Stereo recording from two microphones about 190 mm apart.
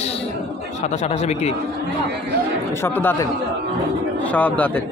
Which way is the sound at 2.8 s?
10° left (ahead or behind).